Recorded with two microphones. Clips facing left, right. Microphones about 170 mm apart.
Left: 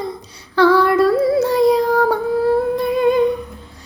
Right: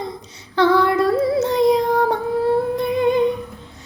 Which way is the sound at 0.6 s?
20° right (ahead or behind).